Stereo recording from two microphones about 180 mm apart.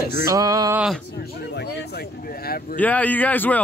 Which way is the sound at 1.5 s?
70° left (ahead or behind).